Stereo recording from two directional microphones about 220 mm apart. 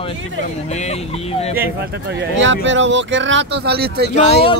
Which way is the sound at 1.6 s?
50° right (ahead or behind).